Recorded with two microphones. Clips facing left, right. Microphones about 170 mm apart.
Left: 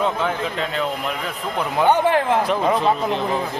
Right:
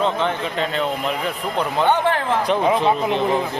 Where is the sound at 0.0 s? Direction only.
5° left (ahead or behind).